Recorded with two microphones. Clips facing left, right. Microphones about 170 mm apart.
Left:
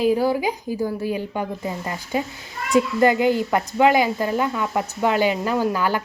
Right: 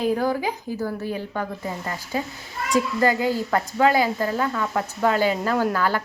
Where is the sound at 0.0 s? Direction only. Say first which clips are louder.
Left 3 dB; 10° left (ahead or behind).